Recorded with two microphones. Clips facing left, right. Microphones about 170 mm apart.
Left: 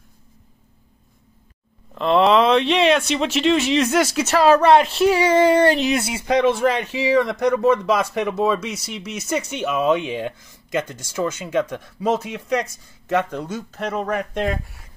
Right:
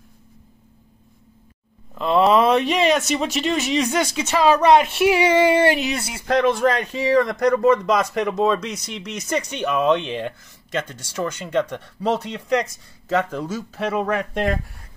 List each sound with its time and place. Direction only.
2.0 s speech: centre (ahead or behind)
5.0 s a sound: 20° right (ahead or behind)
5.7 s speech: 5° right (ahead or behind)
5.9 s speech: 25° left (ahead or behind)
6.2 s speech: centre (ahead or behind)